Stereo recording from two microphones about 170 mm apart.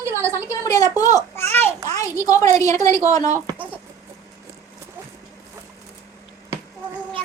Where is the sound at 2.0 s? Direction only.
20° left (ahead or behind).